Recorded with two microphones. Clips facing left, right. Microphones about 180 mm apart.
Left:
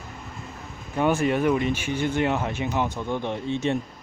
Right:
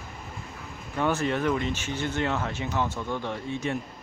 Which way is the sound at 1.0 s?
15° left (ahead or behind).